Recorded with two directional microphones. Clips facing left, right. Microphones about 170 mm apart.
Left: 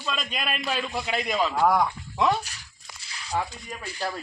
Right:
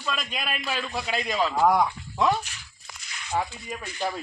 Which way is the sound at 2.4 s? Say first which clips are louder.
Even; 35° left (ahead or behind).